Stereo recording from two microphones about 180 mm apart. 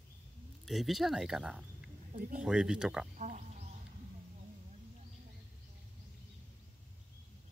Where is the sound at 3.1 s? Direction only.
45° right (ahead or behind).